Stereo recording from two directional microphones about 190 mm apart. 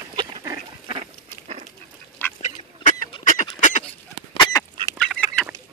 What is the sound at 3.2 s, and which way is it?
Duck, 40° left (ahead or behind).